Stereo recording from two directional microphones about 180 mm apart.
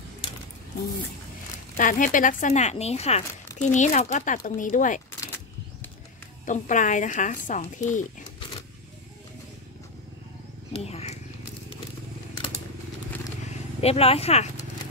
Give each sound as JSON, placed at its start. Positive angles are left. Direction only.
{"t": 1.8, "sound": "speech", "side_deg": 45}
{"t": 5.2, "sound": "a sound", "side_deg": 10}
{"t": 6.4, "sound": "speech", "side_deg": 45}
{"t": 10.7, "sound": "wild animals", "side_deg": 35}
{"t": 13.7, "sound": "speech", "side_deg": 35}